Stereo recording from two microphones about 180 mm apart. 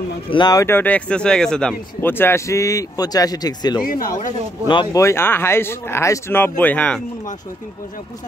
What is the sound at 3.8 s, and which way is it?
Speech, 50° left (ahead or behind).